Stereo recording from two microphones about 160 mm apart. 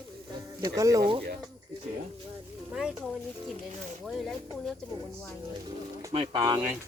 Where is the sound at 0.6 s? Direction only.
20° right (ahead or behind).